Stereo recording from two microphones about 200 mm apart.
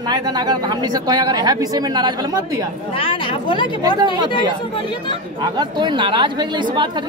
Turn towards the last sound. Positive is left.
turn(degrees=-25)  # may be behind; listen again after turning